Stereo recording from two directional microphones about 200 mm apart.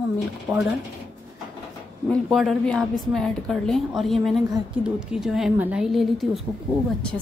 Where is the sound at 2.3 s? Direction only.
Centre (ahead or behind).